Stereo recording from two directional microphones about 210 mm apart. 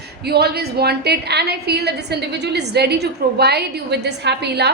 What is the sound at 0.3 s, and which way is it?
A woman's voice, 50° right (ahead or behind).